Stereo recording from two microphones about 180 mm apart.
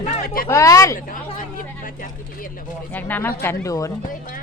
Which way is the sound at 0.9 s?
50° left (ahead or behind).